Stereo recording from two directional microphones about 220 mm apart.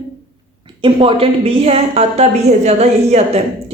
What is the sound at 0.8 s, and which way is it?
Speech, 25° right (ahead or behind).